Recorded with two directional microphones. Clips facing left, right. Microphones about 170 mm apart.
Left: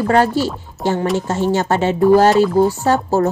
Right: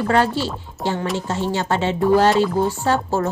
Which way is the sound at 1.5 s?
45° left (ahead or behind).